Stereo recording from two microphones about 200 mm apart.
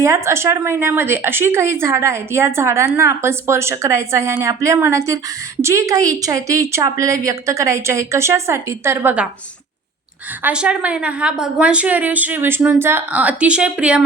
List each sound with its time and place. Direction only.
0.0 s speech: 15° right (ahead or behind)
10.4 s speech: 5° right (ahead or behind)